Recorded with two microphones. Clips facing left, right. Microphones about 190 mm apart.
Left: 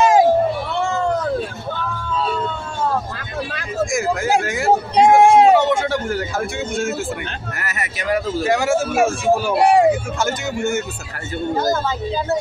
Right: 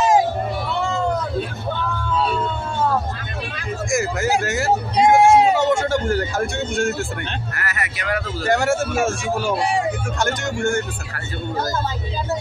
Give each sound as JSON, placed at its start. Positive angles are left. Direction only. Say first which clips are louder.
{"t": 0.0, "sound": "a sound", "louder": "left 3 dB", "side_deg": 60}
{"t": 4.2, "sound": "speech", "louder": "left 1 dB", "side_deg": 0}
{"t": 5.0, "sound": "hubbub", "louder": "left 1 dB", "side_deg": 0}
{"t": 5.6, "sound": "a sound", "louder": "even", "side_deg": 0}
{"t": 7.5, "sound": "speech", "louder": "even", "side_deg": 20}
{"t": 8.5, "sound": "speech", "louder": "right 1 dB", "side_deg": 0}
{"t": 9.6, "sound": "speech", "louder": "left 8 dB", "side_deg": 65}
{"t": 10.1, "sound": "speech", "louder": "left 1 dB", "side_deg": 5}